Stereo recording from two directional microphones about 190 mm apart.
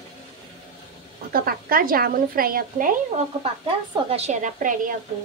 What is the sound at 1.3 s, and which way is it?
Speech, 50° right (ahead or behind).